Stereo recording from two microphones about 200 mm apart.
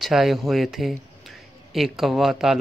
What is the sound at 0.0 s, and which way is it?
Speech, centre (ahead or behind).